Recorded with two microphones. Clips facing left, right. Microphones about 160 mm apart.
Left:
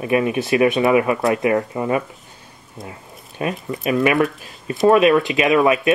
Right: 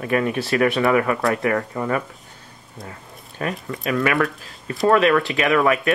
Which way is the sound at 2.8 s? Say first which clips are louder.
Left 2 dB; 20° left (ahead or behind).